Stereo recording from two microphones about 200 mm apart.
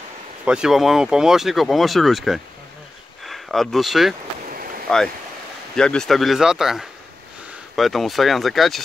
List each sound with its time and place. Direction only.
0.5 s speech: 5° right (ahead or behind)
4.5 s a sound: 45° right (ahead or behind)
4.8 s speech: centre (ahead or behind)